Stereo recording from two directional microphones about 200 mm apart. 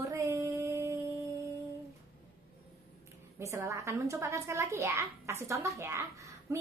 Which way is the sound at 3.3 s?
15° right (ahead or behind).